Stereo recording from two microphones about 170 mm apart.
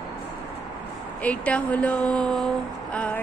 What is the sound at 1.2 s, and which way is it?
A woman's voice, 10° left (ahead or behind).